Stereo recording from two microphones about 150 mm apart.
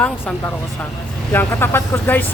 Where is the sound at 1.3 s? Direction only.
15° left (ahead or behind).